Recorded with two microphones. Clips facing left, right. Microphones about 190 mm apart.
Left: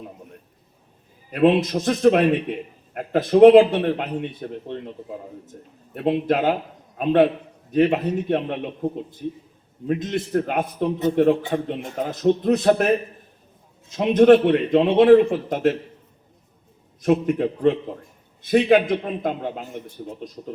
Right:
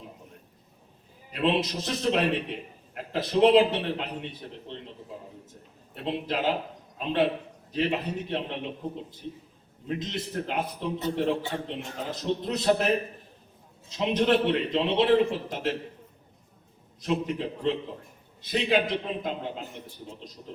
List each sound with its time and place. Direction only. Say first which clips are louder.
1.3 s a man's voice: left 9 dB; 50° left (ahead or behind)
13.9 s a man's voice: left 10 dB; 50° left (ahead or behind)
17.0 s a man's voice: left 9 dB; 50° left (ahead or behind)